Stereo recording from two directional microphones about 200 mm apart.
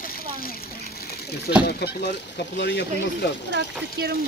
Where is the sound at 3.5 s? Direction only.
55° right (ahead or behind).